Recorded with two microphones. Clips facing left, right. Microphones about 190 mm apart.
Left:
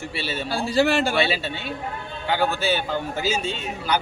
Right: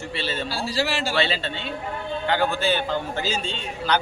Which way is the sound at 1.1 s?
10° left (ahead or behind).